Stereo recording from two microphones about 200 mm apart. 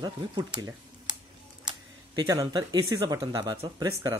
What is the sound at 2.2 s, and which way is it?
Speech, 20° right (ahead or behind).